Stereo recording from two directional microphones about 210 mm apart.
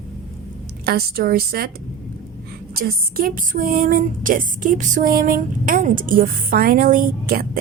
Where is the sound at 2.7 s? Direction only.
45° right (ahead or behind).